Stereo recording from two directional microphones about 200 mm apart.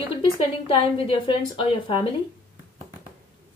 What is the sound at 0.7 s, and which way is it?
A woman's voice, 25° left (ahead or behind).